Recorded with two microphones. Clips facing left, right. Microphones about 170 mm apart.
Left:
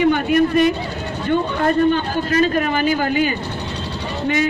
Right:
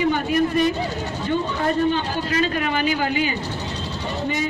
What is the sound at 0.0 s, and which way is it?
A man's voice, 65° left (ahead or behind).